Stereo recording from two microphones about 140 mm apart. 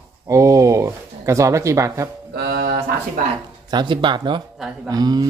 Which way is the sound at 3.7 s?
35° right (ahead or behind).